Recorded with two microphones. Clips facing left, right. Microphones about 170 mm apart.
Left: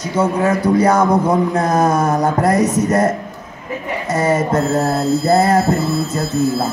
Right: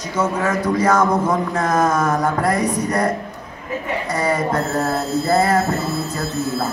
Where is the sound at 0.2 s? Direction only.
35° left (ahead or behind).